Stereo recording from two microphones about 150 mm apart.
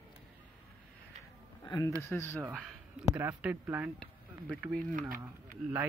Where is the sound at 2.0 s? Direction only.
15° left (ahead or behind).